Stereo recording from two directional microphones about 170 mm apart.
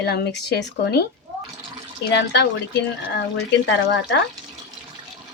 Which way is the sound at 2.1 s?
90° left.